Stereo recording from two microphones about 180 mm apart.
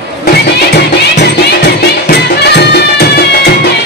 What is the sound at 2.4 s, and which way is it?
Music, 65° left (ahead or behind).